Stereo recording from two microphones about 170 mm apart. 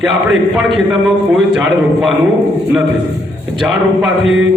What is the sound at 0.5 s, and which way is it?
Speech, centre (ahead or behind).